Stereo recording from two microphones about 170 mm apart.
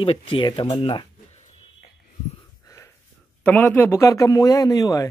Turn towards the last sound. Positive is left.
turn(degrees=20)  # may be behind; listen again after turning